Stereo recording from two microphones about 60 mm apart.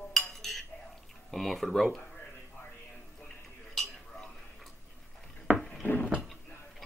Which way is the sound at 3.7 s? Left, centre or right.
Centre.